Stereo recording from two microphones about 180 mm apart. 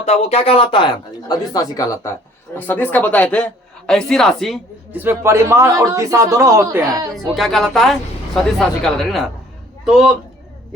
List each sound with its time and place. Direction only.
0.0 s a man's voice: 35° left (ahead or behind); by 4.6 s centre (ahead or behind)
4.9 s speech: 10° right (ahead or behind)
7.3 s a man's voice: centre (ahead or behind)